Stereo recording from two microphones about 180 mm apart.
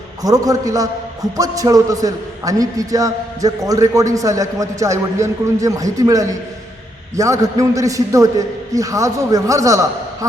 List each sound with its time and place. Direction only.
0.2 s a man's voice: 20° right (ahead or behind)